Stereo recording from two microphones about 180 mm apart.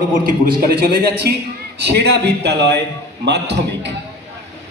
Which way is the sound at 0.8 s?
60° right (ahead or behind).